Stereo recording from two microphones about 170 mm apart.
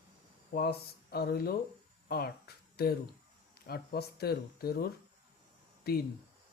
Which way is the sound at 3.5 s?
65° left (ahead or behind).